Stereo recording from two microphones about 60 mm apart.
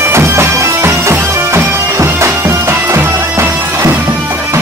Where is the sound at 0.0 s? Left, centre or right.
Right.